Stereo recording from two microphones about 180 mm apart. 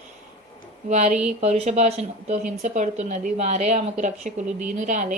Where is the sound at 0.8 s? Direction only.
40° right (ahead or behind).